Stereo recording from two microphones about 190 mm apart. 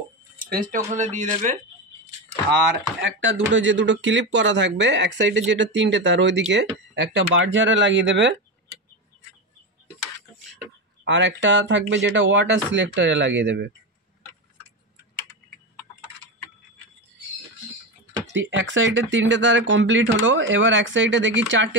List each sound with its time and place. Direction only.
0.5 s speech: 45° right (ahead or behind)
3.0 s speech: 70° right (ahead or behind)
11.1 s speech: 70° right (ahead or behind)
18.3 s speech: 75° right (ahead or behind)